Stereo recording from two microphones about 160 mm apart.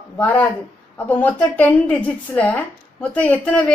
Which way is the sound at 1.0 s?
10° left (ahead or behind).